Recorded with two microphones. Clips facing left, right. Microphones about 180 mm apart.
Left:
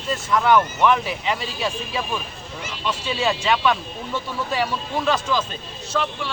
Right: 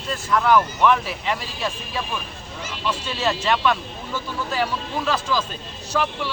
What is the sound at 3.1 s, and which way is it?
Speech, centre (ahead or behind).